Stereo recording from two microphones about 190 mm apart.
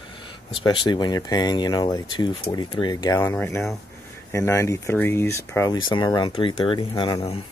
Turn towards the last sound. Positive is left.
turn(degrees=25)  # may be behind; listen again after turning